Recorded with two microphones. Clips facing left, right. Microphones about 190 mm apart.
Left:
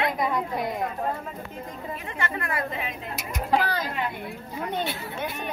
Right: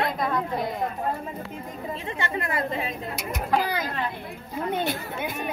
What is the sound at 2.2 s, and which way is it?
Speech, 25° right (ahead or behind).